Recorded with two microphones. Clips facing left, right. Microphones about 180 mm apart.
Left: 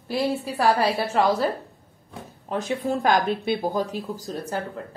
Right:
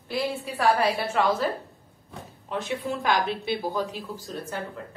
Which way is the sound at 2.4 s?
40° left (ahead or behind).